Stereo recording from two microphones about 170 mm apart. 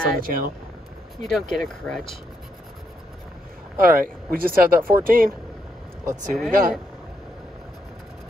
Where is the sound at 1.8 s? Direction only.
5° left (ahead or behind).